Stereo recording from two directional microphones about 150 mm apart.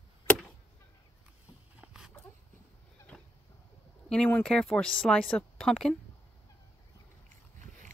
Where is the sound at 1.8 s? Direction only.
5° right (ahead or behind).